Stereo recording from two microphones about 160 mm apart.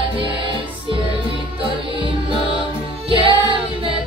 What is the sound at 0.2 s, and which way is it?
Music, 30° right (ahead or behind).